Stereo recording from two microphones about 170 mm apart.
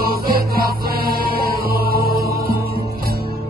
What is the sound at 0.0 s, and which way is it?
Music, 65° right (ahead or behind).